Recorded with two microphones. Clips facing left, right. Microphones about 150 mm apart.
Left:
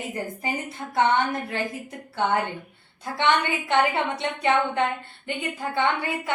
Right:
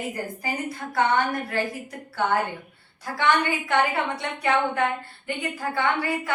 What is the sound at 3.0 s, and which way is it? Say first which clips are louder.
A woman's voice: even; 20° left (ahead or behind).